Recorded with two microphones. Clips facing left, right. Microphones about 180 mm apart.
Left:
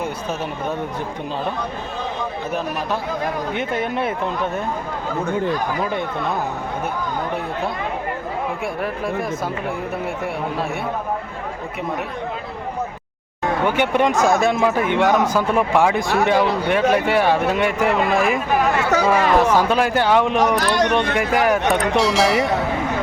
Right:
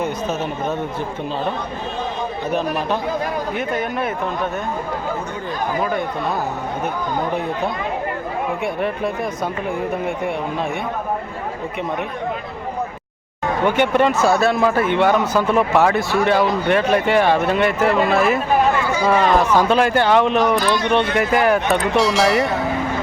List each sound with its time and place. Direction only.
3.5 s speech: 25° left (ahead or behind)
8.6 s speech: centre (ahead or behind)
13.7 s speech: 10° left (ahead or behind)
18.8 s a sound: 75° left (ahead or behind)
19.0 s speech: 5° left (ahead or behind)
20.6 s speech: 80° left
21.2 s speech: 10° left (ahead or behind)